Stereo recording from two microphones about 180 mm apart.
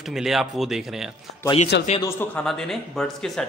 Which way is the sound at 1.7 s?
75° left (ahead or behind).